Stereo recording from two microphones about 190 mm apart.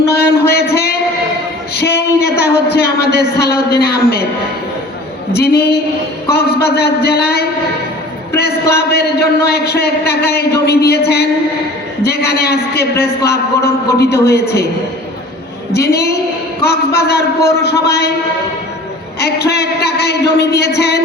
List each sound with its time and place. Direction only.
0.1 s a sound: 60° left (ahead or behind)
5.3 s a man's voice: 60° left (ahead or behind)
15.7 s a man's voice: 60° left (ahead or behind)
19.2 s a man's voice: 60° left (ahead or behind)